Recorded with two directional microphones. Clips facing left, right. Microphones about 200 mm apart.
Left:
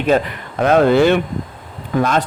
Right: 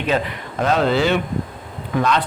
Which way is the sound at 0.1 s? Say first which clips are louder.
Left 5 dB; 45° left (ahead or behind).